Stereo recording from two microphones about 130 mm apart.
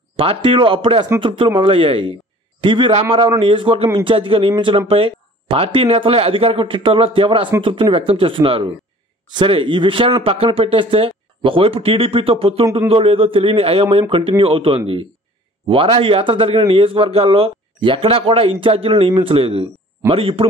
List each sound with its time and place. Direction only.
0.1 s a man's voice: 40° right (ahead or behind)